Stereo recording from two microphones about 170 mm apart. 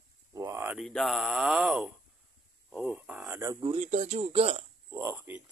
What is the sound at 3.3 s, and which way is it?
Speech, 20° right (ahead or behind).